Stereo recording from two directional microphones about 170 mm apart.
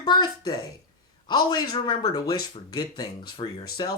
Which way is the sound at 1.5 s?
25° left (ahead or behind).